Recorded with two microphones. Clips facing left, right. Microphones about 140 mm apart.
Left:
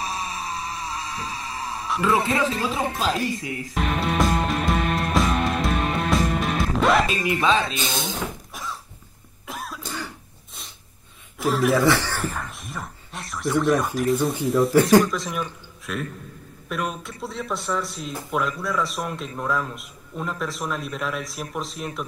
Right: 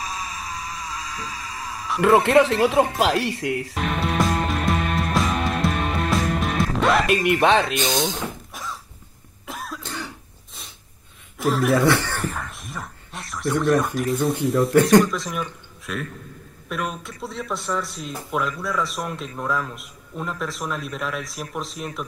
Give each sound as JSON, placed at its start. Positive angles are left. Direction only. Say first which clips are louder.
{"t": 0.0, "sound": "music", "louder": "left 2 dB", "side_deg": 30}
{"t": 2.3, "sound": "speech", "louder": "right 8 dB", "side_deg": -70}
{"t": 3.0, "sound": "speech", "louder": "right 3 dB", "side_deg": -80}
{"t": 3.7, "sound": "music", "louder": "left 4 dB", "side_deg": 0}
{"t": 7.4, "sound": "speech", "louder": "right 2 dB", "side_deg": -65}
{"t": 8.0, "sound": "a sound", "louder": "right 4 dB", "side_deg": 0}
{"t": 9.5, "sound": "cough", "louder": "even", "side_deg": 0}
{"t": 11.3, "sound": "speech", "louder": "right 1 dB", "side_deg": 0}